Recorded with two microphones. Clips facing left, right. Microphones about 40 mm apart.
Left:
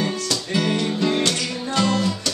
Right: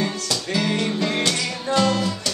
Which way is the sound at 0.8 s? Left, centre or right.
Centre.